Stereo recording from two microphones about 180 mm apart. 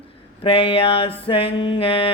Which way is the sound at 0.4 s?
35° left (ahead or behind).